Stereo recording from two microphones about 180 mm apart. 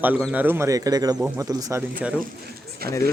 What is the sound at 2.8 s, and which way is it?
Speech, 60° right (ahead or behind).